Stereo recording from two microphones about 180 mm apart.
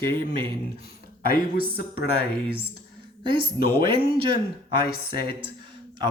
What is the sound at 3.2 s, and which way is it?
A woman's voice, 30° right (ahead or behind).